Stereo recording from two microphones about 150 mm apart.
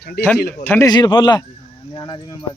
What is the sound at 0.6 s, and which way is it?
Speech, 15° left (ahead or behind).